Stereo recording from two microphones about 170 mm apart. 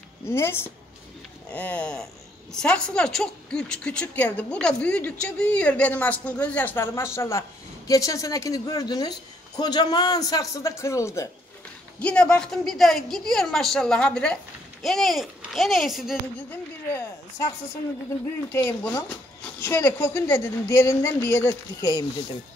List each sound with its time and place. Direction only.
0.3 s a woman's voice: 15° left (ahead or behind)
12.0 s a woman's voice: 5° left (ahead or behind)
16.3 s a woman's voice: 15° left (ahead or behind)
18.5 s a woman's voice: 15° left (ahead or behind)